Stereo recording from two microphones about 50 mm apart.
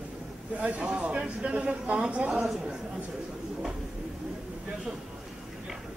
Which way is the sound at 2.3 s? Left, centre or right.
Centre.